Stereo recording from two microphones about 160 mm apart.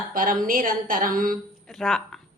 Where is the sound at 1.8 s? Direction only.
5° left (ahead or behind).